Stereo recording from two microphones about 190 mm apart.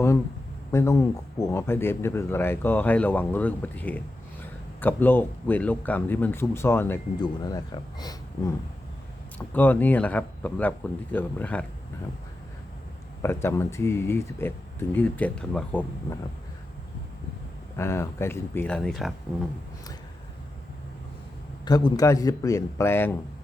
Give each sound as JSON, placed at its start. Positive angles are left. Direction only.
{"t": 0.7, "sound": "a man's voice", "side_deg": 15}
{"t": 9.5, "sound": "a man's voice", "side_deg": 10}
{"t": 13.2, "sound": "a man's voice", "side_deg": 15}
{"t": 17.7, "sound": "a man's voice", "side_deg": 15}
{"t": 21.6, "sound": "a man's voice", "side_deg": 20}